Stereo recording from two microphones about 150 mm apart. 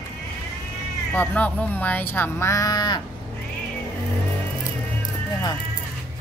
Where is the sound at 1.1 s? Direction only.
10° left (ahead or behind); by 3.0 s 25° left (ahead or behind).